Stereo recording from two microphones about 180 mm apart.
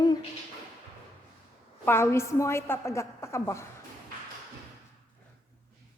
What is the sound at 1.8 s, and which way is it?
A woman's voice, 15° left (ahead or behind).